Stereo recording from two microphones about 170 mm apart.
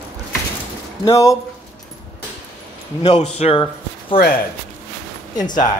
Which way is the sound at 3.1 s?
35° left (ahead or behind).